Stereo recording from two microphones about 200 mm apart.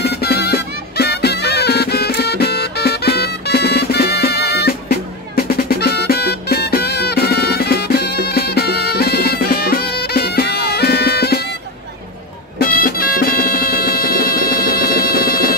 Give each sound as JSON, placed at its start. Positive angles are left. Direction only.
{"t": 0.0, "sound": "music", "side_deg": 55}
{"t": 12.5, "sound": "music", "side_deg": 45}